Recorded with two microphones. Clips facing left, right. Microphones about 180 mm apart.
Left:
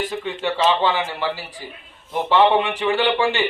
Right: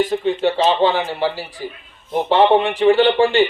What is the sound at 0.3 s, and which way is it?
Speech, 45° right (ahead or behind).